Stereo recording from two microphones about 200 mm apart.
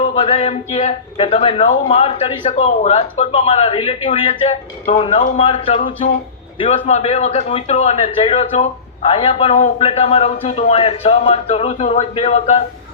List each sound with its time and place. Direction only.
0.0 s speech: 25° left (ahead or behind)